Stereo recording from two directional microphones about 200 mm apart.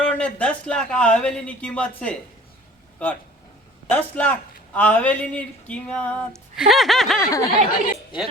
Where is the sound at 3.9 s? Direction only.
10° left (ahead or behind).